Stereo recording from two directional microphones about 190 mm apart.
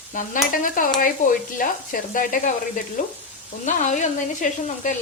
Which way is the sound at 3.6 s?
40° left (ahead or behind).